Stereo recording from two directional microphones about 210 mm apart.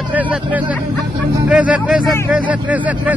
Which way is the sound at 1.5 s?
5° right (ahead or behind).